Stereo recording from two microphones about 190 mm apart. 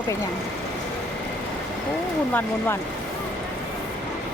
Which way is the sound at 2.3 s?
10° left (ahead or behind).